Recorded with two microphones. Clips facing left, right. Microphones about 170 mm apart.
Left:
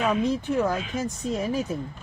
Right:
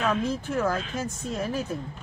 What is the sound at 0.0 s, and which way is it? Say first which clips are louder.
Speech: left 3 dB; 15° left (ahead or behind).